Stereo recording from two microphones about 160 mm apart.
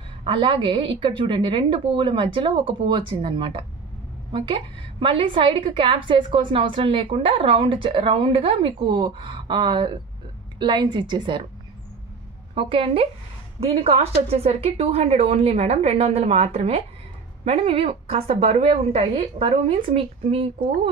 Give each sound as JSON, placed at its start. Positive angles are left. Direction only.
{"t": 0.2, "sound": "a woman's voice", "side_deg": -35}
{"t": 12.5, "sound": "a woman's voice", "side_deg": -35}